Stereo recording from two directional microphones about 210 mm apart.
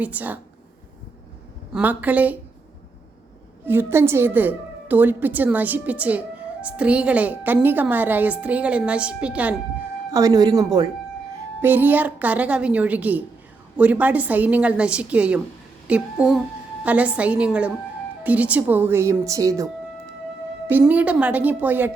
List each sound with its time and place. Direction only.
0.0 s a woman's voice: 5° right (ahead or behind)
1.7 s a woman's voice: 5° right (ahead or behind)
3.7 s a woman's voice: 10° right (ahead or behind)
10.1 s a woman's voice: 15° right (ahead or behind)
20.7 s a woman's voice: 10° right (ahead or behind)